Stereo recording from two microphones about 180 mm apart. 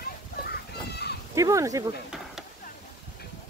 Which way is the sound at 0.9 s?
65° left (ahead or behind).